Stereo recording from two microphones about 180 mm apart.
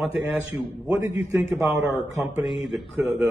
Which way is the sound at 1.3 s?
15° right (ahead or behind).